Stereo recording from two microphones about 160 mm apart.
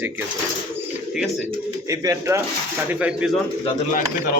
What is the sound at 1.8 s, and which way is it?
Speech, 20° right (ahead or behind).